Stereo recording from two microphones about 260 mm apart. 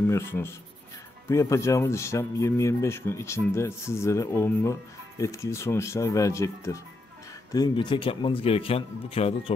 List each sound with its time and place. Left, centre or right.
0.1 s speech: centre